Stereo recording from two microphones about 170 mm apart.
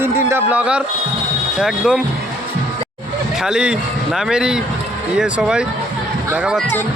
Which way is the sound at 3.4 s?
5° right (ahead or behind).